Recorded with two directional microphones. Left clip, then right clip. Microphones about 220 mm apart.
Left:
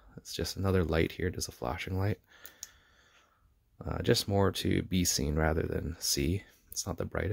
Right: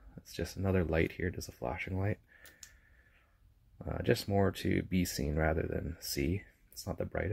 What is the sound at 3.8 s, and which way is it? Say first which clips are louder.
Speech: left 3 dB; 25° left (ahead or behind).